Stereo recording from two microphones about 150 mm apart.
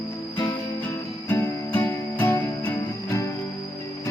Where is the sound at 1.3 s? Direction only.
15° left (ahead or behind).